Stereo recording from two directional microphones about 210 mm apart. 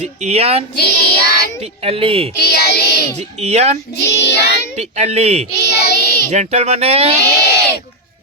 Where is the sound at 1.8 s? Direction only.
25° right (ahead or behind).